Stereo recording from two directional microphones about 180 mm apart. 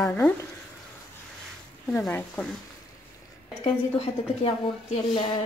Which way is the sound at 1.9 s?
5° left (ahead or behind).